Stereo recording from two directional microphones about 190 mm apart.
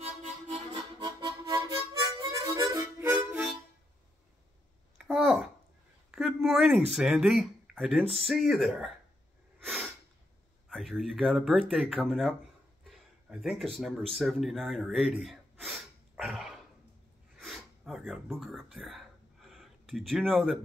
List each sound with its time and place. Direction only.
0.0 s harmonica: 35° right (ahead or behind)
1.0 s harmonica: 20° right (ahead or behind)
4.9 s a sound: 5° right (ahead or behind)
6.9 s speech: centre (ahead or behind)
10.7 s speech: centre (ahead or behind)
17.4 s a sound: centre (ahead or behind)